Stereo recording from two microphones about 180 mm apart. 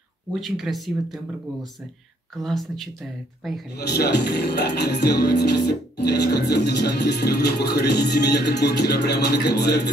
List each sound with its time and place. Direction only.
0.3 s speech: centre (ahead or behind)
2.3 s speech: centre (ahead or behind)
3.7 s speech: 65° left (ahead or behind)